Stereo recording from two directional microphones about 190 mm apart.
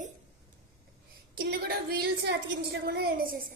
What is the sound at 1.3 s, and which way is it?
A woman's voice, 55° right (ahead or behind).